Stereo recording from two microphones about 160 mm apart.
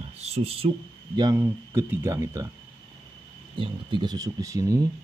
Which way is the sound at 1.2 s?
20° right (ahead or behind).